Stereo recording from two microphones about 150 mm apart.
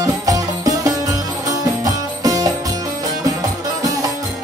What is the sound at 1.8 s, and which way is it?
Music, 25° right (ahead or behind).